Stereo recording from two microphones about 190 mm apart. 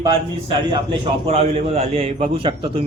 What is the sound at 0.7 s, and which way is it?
A man's voice, 25° right (ahead or behind).